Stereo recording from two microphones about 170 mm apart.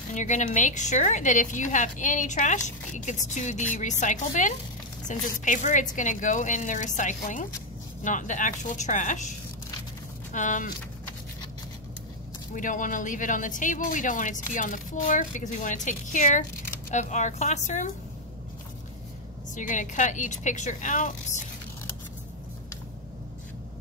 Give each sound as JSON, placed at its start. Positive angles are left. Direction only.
{"t": 0.1, "sound": "a woman's voice", "side_deg": 45}
{"t": 10.3, "sound": "a woman's voice", "side_deg": 50}
{"t": 12.5, "sound": "a woman's voice", "side_deg": 50}
{"t": 19.5, "sound": "a woman's voice", "side_deg": 50}